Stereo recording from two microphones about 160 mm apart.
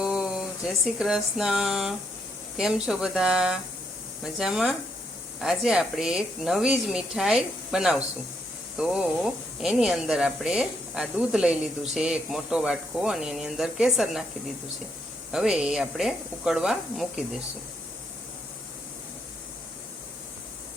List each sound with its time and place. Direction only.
0.0 s a sound: 5° right (ahead or behind)
0.9 s speech: 5° right (ahead or behind)
15.3 s speech: 5° right (ahead or behind)